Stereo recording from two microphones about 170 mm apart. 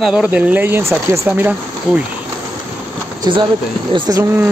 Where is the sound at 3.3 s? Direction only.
25° right (ahead or behind).